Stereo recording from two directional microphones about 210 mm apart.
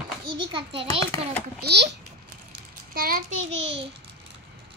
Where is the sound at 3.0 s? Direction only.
45° right (ahead or behind).